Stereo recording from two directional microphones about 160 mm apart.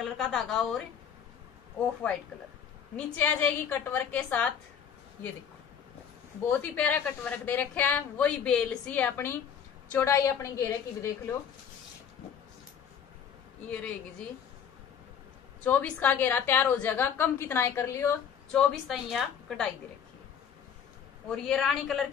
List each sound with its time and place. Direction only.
0.2 s a woman's voice: 5° left (ahead or behind)
3.2 s a woman's voice: 10° left (ahead or behind)
6.5 s a woman's voice: 10° left (ahead or behind)
13.7 s a woman's voice: 10° left (ahead or behind)
15.6 s a woman's voice: 10° left (ahead or behind)
18.5 s a woman's voice: centre (ahead or behind)
21.3 s a woman's voice: centre (ahead or behind)